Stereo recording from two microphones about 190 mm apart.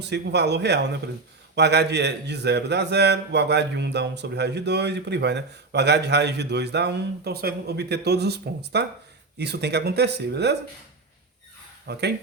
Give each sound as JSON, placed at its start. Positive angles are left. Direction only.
{"t": 0.0, "sound": "a man's voice", "side_deg": -65}
{"t": 11.9, "sound": "a man's voice", "side_deg": -60}